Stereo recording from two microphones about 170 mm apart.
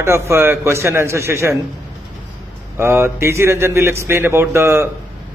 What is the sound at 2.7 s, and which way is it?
Speech, 15° right (ahead or behind).